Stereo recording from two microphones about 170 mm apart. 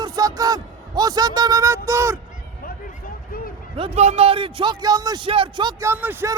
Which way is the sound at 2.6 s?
55° left (ahead or behind).